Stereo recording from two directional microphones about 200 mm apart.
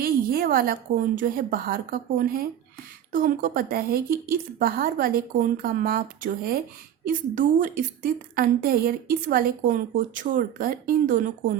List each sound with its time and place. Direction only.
0.0 s speech: 50° right (ahead or behind)